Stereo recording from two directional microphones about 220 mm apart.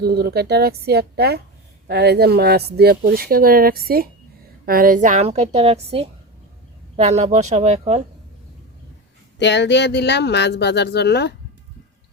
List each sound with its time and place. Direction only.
0.0 s a woman's voice: 45° right (ahead or behind)
9.4 s speech: 50° left (ahead or behind)